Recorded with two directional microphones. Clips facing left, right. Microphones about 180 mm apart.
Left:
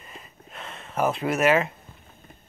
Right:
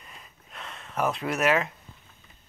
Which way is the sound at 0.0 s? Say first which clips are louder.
Left 5 dB; centre (ahead or behind).